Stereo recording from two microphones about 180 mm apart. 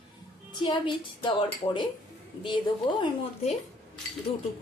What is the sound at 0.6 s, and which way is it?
Speech, 25° left (ahead or behind).